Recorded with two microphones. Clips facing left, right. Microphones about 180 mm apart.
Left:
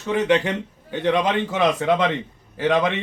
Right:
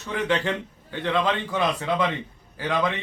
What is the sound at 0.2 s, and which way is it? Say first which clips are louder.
A man's voice: left 4 dB; 20° left (ahead or behind).